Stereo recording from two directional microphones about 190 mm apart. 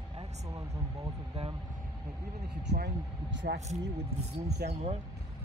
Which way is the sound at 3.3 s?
70° right (ahead or behind).